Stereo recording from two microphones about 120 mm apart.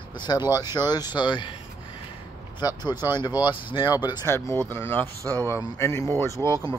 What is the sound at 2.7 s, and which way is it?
Speech, 20° right (ahead or behind).